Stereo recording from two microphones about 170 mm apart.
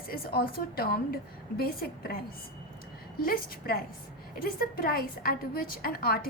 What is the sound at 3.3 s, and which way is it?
A woman's voice, 60° left (ahead or behind).